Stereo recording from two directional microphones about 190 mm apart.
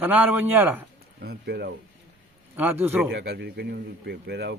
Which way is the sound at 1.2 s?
55° right (ahead or behind).